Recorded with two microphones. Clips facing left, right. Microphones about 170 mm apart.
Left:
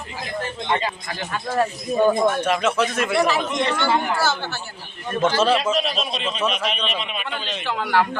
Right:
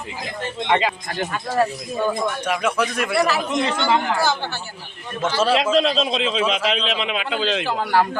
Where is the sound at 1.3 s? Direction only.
5° right (ahead or behind).